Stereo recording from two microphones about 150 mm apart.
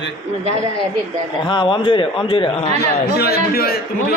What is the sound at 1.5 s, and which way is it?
A man's voice, 30° left (ahead or behind).